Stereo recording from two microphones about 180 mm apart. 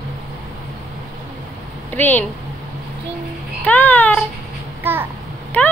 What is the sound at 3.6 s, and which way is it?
Speech, 10° left (ahead or behind).